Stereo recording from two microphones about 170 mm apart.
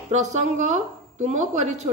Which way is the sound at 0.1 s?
45° right (ahead or behind).